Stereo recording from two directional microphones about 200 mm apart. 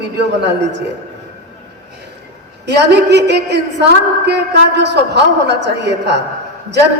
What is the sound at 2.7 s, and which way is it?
A woman's voice, 55° right (ahead or behind).